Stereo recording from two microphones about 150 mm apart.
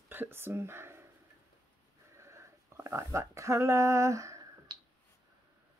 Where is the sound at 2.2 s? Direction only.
20° right (ahead or behind).